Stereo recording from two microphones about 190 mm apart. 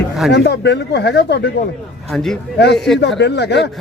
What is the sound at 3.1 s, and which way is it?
Speech, 65° left (ahead or behind).